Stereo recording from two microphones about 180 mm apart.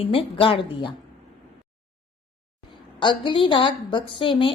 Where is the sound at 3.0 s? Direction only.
25° left (ahead or behind).